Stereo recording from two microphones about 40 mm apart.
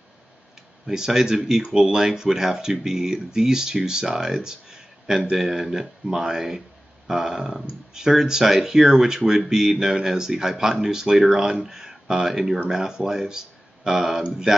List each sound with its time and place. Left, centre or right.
0.8 s speech: centre
4.1 s a sound: centre
5.3 s speech: centre
11.1 s speech: centre